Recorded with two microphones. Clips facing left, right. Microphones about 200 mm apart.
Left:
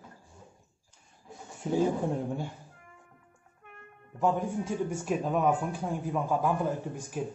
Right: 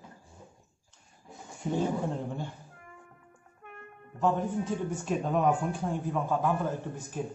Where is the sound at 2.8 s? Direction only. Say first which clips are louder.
Right 4 dB; 60° right (ahead or behind).